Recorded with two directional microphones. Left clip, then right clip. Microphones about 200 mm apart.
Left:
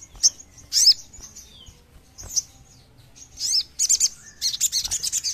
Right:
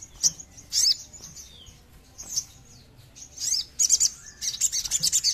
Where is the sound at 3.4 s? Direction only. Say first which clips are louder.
Left 3 dB; 35° left (ahead or behind).